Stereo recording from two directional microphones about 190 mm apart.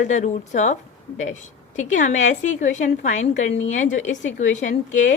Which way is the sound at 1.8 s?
40° left (ahead or behind).